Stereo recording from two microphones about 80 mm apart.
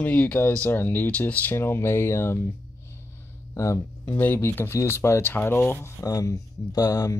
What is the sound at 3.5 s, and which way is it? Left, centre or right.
Speech, left.